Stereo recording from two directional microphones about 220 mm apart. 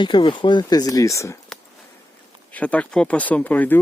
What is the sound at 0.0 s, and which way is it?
Speech, 20° left (ahead or behind).